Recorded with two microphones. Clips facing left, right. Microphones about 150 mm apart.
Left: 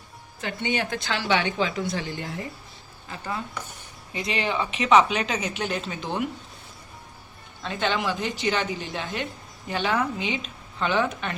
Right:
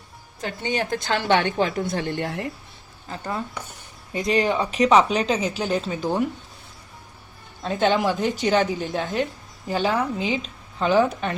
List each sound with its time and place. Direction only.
0.4 s a woman's voice: 40° right (ahead or behind); by 2.5 s 70° right (ahead or behind)
3.1 s speech: 30° right (ahead or behind)
4.1 s speech: 45° right (ahead or behind)
7.6 s a woman's voice: 45° right (ahead or behind)